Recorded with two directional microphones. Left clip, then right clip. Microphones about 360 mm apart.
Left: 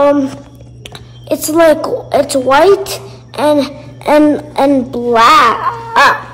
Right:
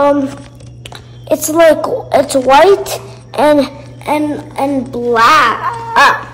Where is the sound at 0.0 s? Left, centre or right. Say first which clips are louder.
Left 1 dB; centre.